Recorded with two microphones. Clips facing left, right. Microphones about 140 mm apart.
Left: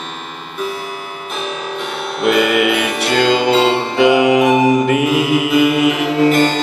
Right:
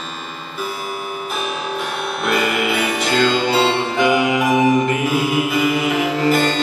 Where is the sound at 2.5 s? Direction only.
65° left (ahead or behind).